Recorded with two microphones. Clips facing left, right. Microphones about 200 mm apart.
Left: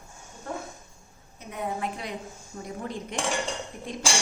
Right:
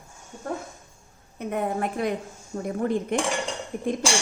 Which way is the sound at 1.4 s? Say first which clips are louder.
Right 6 dB; 50° right (ahead or behind).